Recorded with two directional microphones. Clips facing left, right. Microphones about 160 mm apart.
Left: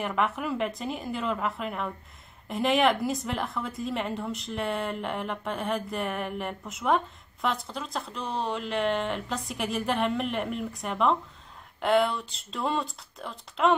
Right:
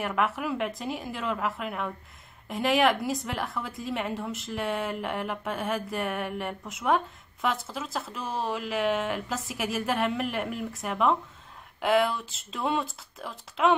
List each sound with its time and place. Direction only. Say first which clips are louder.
0.0 s a woman's voice: even; centre (ahead or behind)